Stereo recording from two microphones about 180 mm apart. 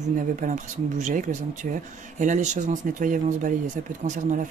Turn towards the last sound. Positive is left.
turn(degrees=-45)  # may be behind; listen again after turning